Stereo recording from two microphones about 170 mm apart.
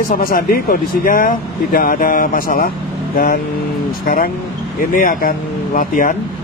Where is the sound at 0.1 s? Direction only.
55° left (ahead or behind).